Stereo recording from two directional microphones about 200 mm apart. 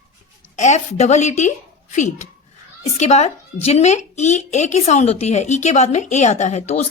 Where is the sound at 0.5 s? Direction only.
35° left (ahead or behind).